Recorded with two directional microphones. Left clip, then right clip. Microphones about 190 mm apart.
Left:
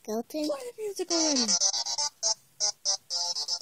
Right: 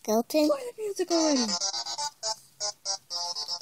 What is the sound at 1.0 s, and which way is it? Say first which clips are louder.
Music: right 2 dB; 50° left (ahead or behind).